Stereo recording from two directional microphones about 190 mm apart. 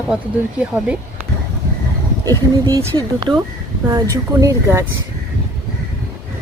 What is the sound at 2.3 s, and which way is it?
Speech, 20° right (ahead or behind).